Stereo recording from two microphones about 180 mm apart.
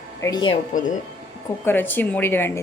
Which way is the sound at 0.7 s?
45° left (ahead or behind).